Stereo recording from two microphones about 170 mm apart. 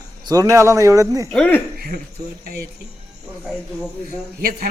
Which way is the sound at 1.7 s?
60° right (ahead or behind).